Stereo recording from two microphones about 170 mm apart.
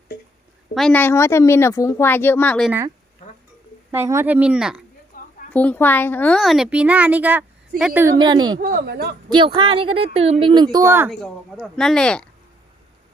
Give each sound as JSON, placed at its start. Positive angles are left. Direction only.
{"t": 0.7, "sound": "speech", "side_deg": 5}
{"t": 3.9, "sound": "speech", "side_deg": -15}
{"t": 5.1, "sound": "a sound", "side_deg": 55}
{"t": 5.5, "sound": "a woman's voice", "side_deg": 10}
{"t": 8.2, "sound": "a woman's voice", "side_deg": -25}
{"t": 8.6, "sound": "speech", "side_deg": -65}
{"t": 9.3, "sound": "a woman's voice", "side_deg": -30}
{"t": 11.1, "sound": "a woman's voice", "side_deg": 0}